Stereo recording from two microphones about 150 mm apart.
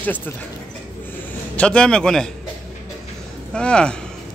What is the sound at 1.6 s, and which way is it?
Speech, 5° left (ahead or behind).